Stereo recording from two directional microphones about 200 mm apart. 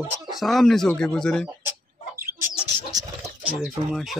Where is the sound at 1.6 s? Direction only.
15° right (ahead or behind).